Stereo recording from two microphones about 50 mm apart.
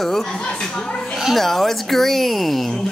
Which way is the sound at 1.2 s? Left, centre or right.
Centre.